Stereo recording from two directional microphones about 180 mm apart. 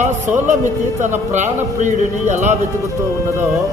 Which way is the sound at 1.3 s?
40° right (ahead or behind).